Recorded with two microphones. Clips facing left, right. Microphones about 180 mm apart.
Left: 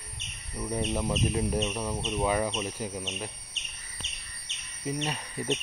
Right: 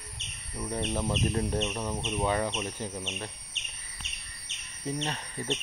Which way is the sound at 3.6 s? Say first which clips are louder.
Even; 40° left (ahead or behind).